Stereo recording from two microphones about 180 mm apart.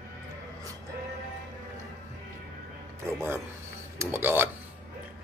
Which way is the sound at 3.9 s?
10° right (ahead or behind).